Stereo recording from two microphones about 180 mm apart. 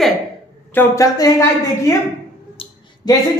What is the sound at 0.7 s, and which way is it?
Speech, 20° left (ahead or behind).